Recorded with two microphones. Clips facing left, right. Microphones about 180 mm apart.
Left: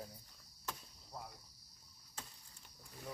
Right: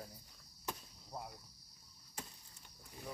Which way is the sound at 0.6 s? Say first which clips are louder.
Right 2 dB; 20° right (ahead or behind).